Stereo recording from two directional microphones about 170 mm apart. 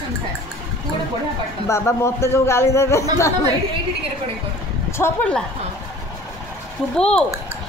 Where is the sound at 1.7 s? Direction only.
15° left (ahead or behind).